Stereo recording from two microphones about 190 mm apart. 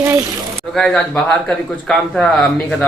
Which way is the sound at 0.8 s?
5° left (ahead or behind).